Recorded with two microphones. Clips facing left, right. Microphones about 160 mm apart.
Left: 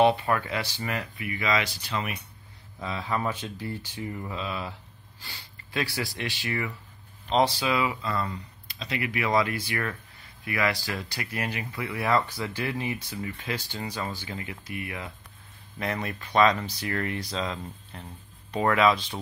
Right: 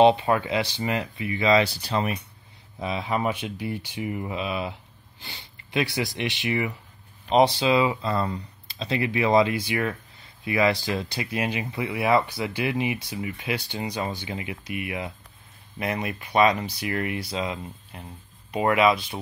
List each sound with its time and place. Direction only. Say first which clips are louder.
0.0 s speech: right 4 dB; 20° right (ahead or behind)
2.8 s speech: right 3 dB; 20° right (ahead or behind)